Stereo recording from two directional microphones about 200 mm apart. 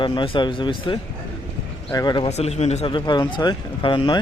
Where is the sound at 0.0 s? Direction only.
25° left (ahead or behind).